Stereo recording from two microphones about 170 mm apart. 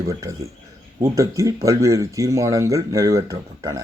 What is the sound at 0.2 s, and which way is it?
A man's voice, 20° right (ahead or behind).